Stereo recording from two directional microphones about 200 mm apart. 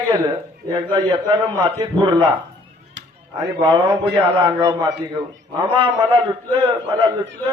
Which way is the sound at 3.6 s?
20° right (ahead or behind).